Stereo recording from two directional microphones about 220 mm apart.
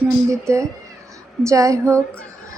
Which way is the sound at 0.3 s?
15° right (ahead or behind).